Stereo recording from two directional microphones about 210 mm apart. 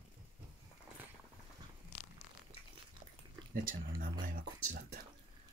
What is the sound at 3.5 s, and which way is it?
Speech, 45° right (ahead or behind).